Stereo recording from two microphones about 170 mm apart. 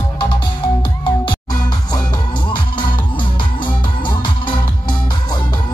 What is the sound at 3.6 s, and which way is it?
Music, 30° left (ahead or behind).